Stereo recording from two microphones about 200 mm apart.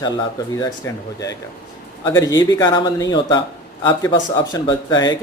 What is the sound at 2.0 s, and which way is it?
Speech, 20° left (ahead or behind).